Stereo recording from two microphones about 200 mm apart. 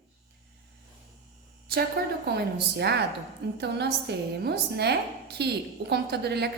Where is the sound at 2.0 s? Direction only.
50° right (ahead or behind).